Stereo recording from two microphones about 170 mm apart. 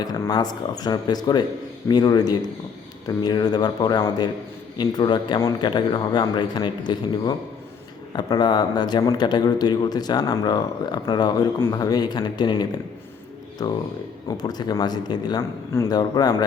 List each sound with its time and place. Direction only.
0.0 s a man's voice: 25° left (ahead or behind)
14.3 s a man's voice: 25° left (ahead or behind)